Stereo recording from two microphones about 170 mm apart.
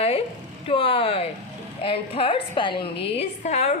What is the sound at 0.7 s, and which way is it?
A woman's voice, 35° left (ahead or behind).